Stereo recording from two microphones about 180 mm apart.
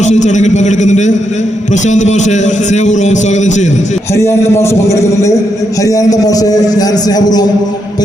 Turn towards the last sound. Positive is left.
turn(degrees=20)  # may be behind; listen again after turning